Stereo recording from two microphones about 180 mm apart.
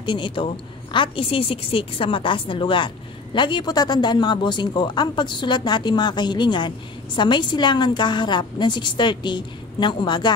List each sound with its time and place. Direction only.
0.0 s a woman's voice: 25° left (ahead or behind)